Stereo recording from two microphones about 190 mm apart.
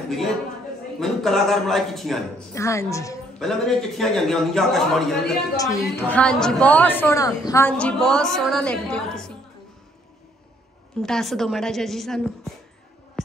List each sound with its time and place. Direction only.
0.1 s a man's voice: centre (ahead or behind)
2.5 s a woman's voice: 15° left (ahead or behind)
3.3 s a man's voice: centre (ahead or behind)
5.6 s a woman's voice: 15° left (ahead or behind)
11.0 s a man's voice: centre (ahead or behind)